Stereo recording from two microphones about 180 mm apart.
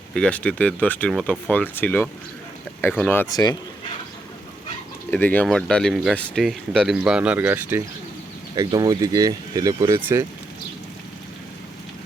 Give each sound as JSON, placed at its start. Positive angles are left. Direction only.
{"t": 0.1, "sound": "speech", "side_deg": 5}
{"t": 5.1, "sound": "speech", "side_deg": 10}
{"t": 8.5, "sound": "speech", "side_deg": -25}